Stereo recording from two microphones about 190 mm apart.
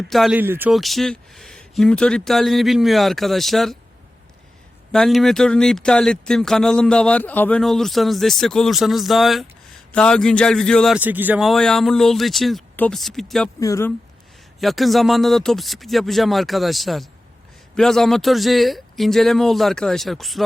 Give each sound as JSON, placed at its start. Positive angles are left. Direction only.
{"t": 0.1, "sound": "speech", "side_deg": 0}
{"t": 0.3, "sound": "speech", "side_deg": -10}
{"t": 0.7, "sound": "speech", "side_deg": 0}
{"t": 4.9, "sound": "speech", "side_deg": 0}
{"t": 13.6, "sound": "speech", "side_deg": 15}
{"t": 14.6, "sound": "speech", "side_deg": 0}